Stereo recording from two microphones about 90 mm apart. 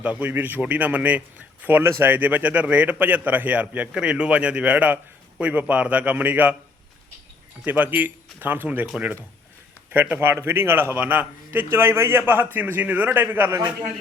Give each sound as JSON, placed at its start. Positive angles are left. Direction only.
{"t": 0.0, "sound": "a man's voice", "side_deg": -15}
{"t": 7.6, "sound": "a man's voice", "side_deg": -20}
{"t": 9.9, "sound": "a man's voice", "side_deg": -20}